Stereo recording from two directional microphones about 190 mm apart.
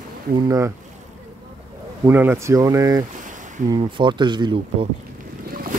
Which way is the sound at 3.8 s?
25° right (ahead or behind).